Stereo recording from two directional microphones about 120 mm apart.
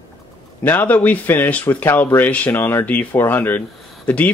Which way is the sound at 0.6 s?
15° left (ahead or behind).